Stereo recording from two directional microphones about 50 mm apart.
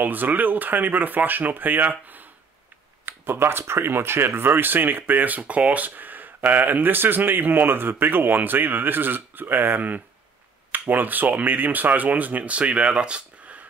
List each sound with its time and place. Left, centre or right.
0.0 s speech: right
3.1 s speech: right